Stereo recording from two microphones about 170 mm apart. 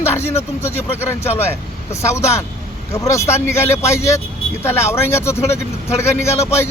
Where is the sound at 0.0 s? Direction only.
15° left (ahead or behind).